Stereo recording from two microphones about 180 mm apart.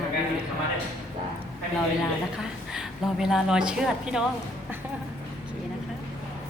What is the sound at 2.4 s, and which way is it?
A woman's voice, 5° right (ahead or behind).